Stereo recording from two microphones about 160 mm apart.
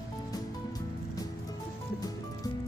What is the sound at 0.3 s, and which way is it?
Music, 25° left (ahead or behind).